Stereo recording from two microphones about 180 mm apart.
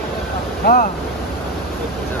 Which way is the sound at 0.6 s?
50° left (ahead or behind).